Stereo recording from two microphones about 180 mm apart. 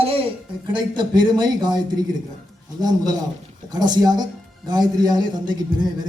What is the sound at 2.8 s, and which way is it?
Speech, 20° right (ahead or behind).